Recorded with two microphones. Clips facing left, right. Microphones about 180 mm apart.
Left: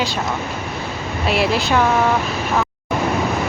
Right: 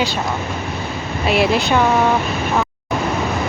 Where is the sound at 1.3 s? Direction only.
Centre (ahead or behind).